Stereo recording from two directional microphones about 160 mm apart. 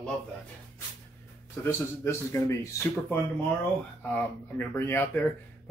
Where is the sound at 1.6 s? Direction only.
15° left (ahead or behind).